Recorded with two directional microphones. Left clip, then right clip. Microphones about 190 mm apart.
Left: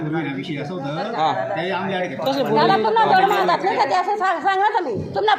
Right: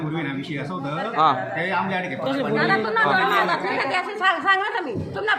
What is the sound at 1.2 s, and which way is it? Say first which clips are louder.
A man's voice: right 1 dB; 10° right (ahead or behind).